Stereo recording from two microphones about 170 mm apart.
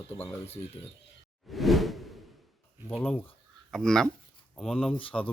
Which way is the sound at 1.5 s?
Centre (ahead or behind).